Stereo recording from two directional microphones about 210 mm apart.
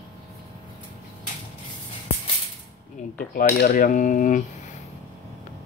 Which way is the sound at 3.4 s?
40° left (ahead or behind).